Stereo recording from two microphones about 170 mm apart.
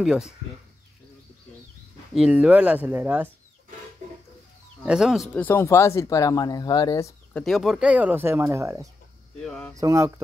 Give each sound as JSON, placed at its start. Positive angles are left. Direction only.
{"t": 0.0, "sound": "speech", "side_deg": -5}
{"t": 2.1, "sound": "speech", "side_deg": -5}
{"t": 4.8, "sound": "speech", "side_deg": -5}
{"t": 5.3, "sound": "speech", "side_deg": 10}
{"t": 7.3, "sound": "speech", "side_deg": 0}
{"t": 9.4, "sound": "speech", "side_deg": 5}
{"t": 9.8, "sound": "mantra", "side_deg": -20}